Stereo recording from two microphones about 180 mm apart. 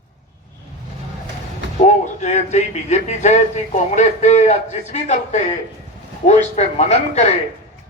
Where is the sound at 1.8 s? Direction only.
40° left (ahead or behind).